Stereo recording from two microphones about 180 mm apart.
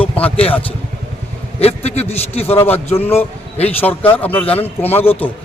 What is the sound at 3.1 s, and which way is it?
Speech, 35° left (ahead or behind).